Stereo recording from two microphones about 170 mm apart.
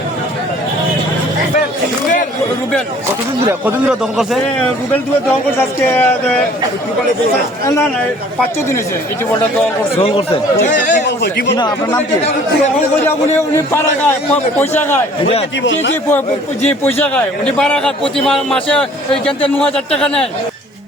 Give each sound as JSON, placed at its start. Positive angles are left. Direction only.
{"t": 3.7, "sound": "a man's voice", "side_deg": -5}
{"t": 5.5, "sound": "a man's voice", "side_deg": 10}
{"t": 9.9, "sound": "speech", "side_deg": 35}
{"t": 11.0, "sound": "speech", "side_deg": 75}
{"t": 11.5, "sound": "speech", "side_deg": 25}
{"t": 13.1, "sound": "a man's voice", "side_deg": 15}
{"t": 15.6, "sound": "a man's voice", "side_deg": 90}
{"t": 17.6, "sound": "a man's voice", "side_deg": 5}